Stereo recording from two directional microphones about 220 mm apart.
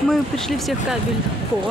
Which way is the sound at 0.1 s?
Centre (ahead or behind).